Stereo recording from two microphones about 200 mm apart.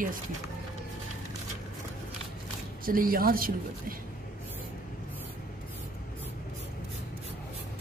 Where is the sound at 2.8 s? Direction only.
45° right (ahead or behind).